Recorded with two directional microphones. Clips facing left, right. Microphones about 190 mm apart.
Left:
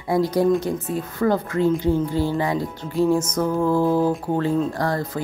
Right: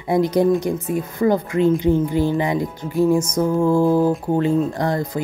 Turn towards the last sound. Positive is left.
turn(degrees=-20)  # may be behind; listen again after turning